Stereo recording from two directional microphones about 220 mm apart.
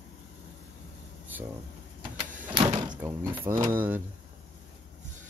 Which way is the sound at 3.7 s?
10° right (ahead or behind).